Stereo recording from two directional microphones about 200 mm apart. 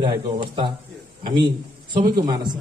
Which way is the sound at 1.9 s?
20° right (ahead or behind).